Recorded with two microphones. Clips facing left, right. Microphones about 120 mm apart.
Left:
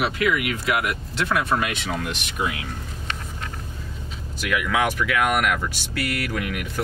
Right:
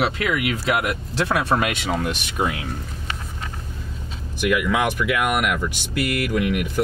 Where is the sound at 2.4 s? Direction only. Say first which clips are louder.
Right 3 dB; 45° right (ahead or behind).